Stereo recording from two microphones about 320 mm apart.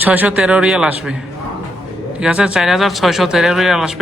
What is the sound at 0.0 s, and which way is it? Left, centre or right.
Speech, centre.